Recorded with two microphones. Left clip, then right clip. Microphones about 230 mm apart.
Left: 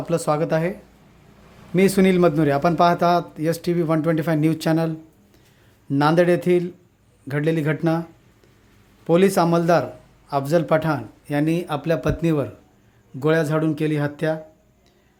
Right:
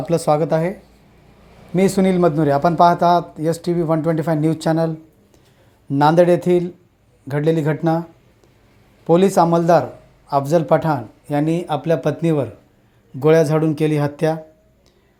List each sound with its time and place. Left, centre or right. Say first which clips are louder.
0.0 s speech: right 4 dB; centre
1.7 s speech: right 1 dB; centre
9.0 s speech: right 3 dB; centre